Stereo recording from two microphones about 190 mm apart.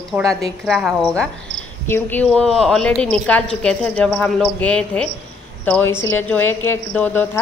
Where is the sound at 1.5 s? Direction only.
40° left (ahead or behind).